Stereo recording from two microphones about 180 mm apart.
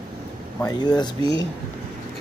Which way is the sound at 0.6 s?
25° left (ahead or behind).